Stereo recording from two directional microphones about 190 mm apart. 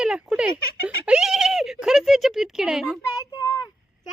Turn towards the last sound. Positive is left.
turn(degrees=20)  # may be behind; listen again after turning